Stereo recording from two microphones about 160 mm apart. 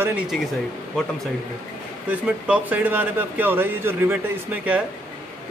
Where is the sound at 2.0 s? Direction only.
10° right (ahead or behind).